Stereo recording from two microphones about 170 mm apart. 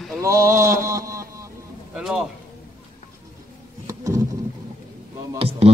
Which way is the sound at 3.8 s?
15° right (ahead or behind).